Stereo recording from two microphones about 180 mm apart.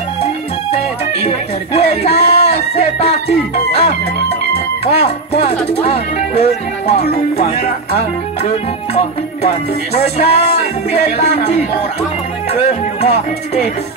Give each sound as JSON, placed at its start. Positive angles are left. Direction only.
{"t": 1.2, "sound": "music", "side_deg": 35}
{"t": 4.8, "sound": "music", "side_deg": 35}
{"t": 12.5, "sound": "speech", "side_deg": 35}